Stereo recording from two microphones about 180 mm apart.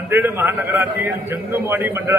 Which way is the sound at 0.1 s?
10° right (ahead or behind).